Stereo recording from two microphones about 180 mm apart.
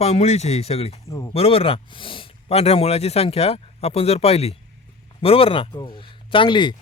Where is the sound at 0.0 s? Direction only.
35° left (ahead or behind).